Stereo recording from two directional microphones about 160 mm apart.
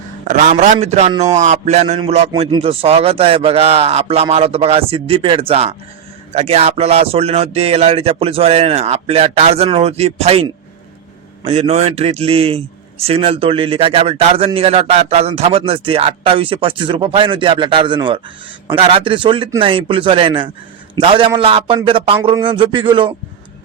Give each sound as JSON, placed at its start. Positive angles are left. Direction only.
{"t": 0.3, "sound": "a man's voice", "side_deg": -55}
{"t": 11.4, "sound": "a man's voice", "side_deg": -40}